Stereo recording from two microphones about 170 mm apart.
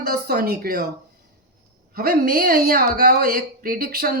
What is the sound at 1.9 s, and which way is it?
Speech, 60° right (ahead or behind).